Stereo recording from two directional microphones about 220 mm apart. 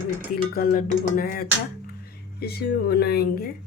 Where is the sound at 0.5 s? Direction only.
40° left (ahead or behind).